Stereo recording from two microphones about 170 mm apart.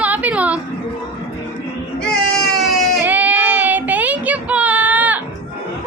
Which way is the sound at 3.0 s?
10° right (ahead or behind).